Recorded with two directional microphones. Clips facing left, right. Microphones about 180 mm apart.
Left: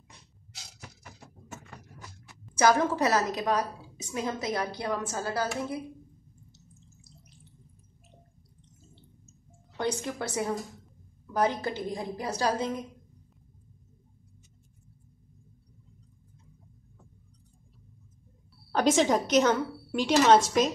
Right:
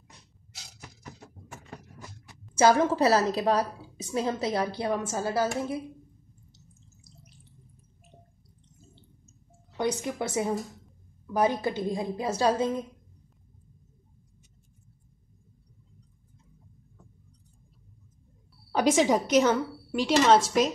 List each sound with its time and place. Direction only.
2.5 s a woman's voice: 25° right (ahead or behind)
9.8 s a woman's voice: 15° right (ahead or behind)
18.7 s a woman's voice: 5° right (ahead or behind)